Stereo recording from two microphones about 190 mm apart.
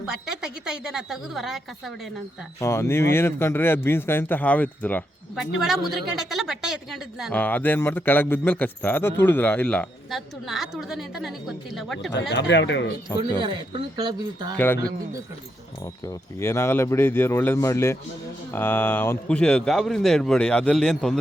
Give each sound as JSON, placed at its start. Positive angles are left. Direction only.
{"t": 0.1, "sound": "speech", "side_deg": -5}
{"t": 2.6, "sound": "a woman's voice", "side_deg": 15}
{"t": 5.4, "sound": "a woman's voice", "side_deg": 0}
{"t": 12.3, "sound": "speech", "side_deg": 65}
{"t": 13.4, "sound": "speech", "side_deg": -25}
{"t": 16.0, "sound": "a woman's voice", "side_deg": 15}